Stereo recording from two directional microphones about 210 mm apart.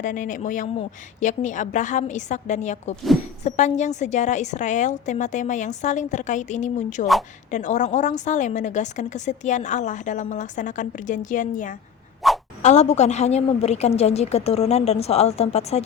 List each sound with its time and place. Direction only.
0.0 s a woman's voice: 40° left (ahead or behind)
2.9 s a woman's voice: centre (ahead or behind)
3.4 s a woman's voice: 35° left (ahead or behind)
12.2 s a sound: centre (ahead or behind)
12.6 s a woman's voice: 30° left (ahead or behind)